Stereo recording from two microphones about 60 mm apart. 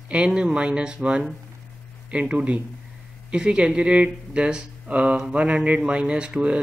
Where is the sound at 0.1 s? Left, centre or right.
Centre.